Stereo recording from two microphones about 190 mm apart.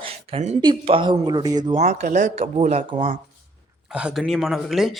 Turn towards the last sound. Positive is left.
turn(degrees=0)  # may be behind; listen again after turning